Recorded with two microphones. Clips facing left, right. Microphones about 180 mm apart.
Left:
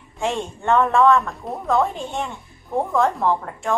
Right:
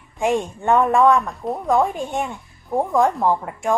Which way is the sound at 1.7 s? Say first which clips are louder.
Right 1 dB; 15° right (ahead or behind).